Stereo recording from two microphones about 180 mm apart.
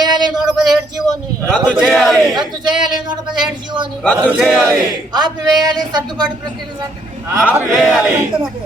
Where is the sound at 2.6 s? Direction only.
25° right (ahead or behind).